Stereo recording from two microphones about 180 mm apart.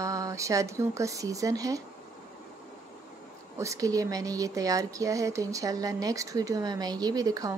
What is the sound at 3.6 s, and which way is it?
A woman's voice, 20° right (ahead or behind).